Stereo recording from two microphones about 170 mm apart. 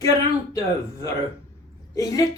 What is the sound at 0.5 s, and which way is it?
A woman's voice, 20° left (ahead or behind).